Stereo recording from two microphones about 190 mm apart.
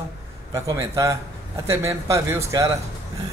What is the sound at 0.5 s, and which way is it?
Speech, 15° right (ahead or behind).